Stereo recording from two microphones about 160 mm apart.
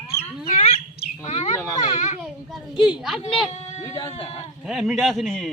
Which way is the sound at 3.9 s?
35° left (ahead or behind).